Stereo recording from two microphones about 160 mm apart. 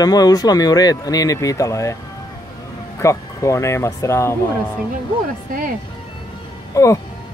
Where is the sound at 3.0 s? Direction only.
20° left (ahead or behind).